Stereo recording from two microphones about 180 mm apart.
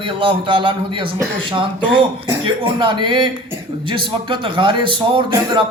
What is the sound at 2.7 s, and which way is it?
A man's voice, 25° right (ahead or behind).